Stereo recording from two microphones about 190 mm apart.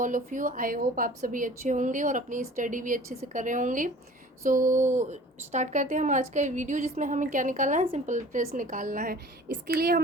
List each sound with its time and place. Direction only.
0.0 s a woman's voice: 45° right (ahead or behind)